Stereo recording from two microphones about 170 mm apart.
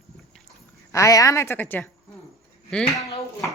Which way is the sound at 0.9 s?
20° left (ahead or behind).